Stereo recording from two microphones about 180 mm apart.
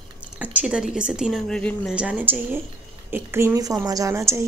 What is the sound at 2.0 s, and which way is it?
Speech, 10° right (ahead or behind).